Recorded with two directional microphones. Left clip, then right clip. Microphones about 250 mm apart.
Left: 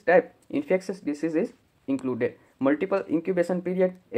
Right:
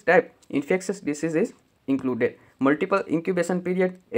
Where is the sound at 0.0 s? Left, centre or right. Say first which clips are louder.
Right 1 dB; centre.